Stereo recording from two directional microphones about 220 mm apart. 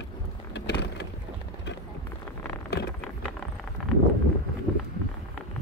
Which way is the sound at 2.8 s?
50° left (ahead or behind).